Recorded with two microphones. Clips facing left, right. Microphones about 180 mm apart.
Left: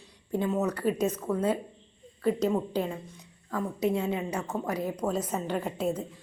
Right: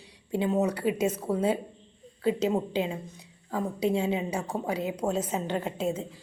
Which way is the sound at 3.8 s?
30° right (ahead or behind).